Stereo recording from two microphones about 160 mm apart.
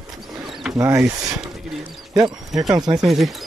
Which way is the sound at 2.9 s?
Centre (ahead or behind).